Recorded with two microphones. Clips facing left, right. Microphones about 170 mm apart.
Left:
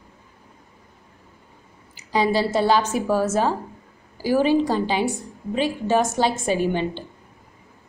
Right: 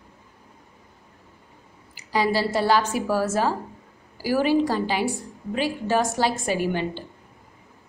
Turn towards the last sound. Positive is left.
turn(degrees=20)  # may be behind; listen again after turning